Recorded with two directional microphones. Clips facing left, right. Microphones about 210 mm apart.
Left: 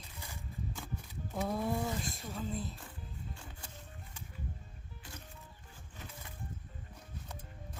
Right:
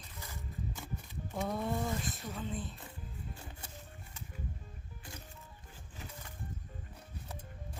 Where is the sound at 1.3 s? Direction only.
Centre (ahead or behind).